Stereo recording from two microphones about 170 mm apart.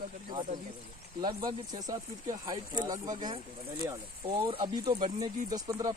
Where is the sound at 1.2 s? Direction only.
25° right (ahead or behind).